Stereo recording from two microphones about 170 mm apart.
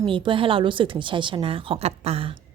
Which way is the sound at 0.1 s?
30° right (ahead or behind).